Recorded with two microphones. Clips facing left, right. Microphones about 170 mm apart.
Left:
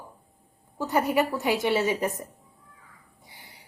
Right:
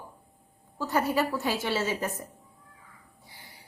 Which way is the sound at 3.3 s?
20° left (ahead or behind).